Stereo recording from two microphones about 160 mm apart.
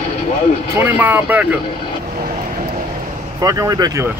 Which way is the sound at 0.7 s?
10° right (ahead or behind).